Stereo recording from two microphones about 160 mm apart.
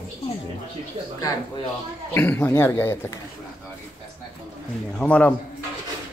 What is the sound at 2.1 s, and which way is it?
Speech, 10° left (ahead or behind).